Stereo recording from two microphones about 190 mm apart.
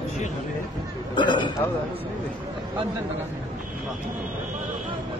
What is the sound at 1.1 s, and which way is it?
Speech, 25° left (ahead or behind).